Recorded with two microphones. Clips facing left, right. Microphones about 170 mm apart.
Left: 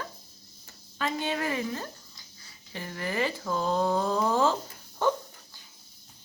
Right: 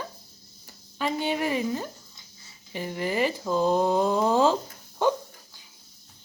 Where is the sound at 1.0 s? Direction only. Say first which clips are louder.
Right 3 dB; 15° right (ahead or behind).